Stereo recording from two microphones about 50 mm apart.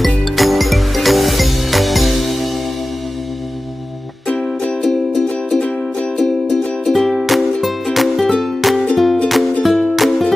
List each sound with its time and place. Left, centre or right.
0.0 s music: centre
4.8 s music: centre
6.8 s music: centre